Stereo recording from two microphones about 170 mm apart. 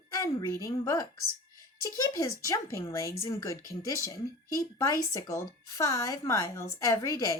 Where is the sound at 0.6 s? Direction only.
20° left (ahead or behind).